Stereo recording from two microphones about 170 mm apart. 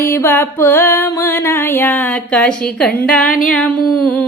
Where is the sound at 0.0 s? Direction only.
15° left (ahead or behind).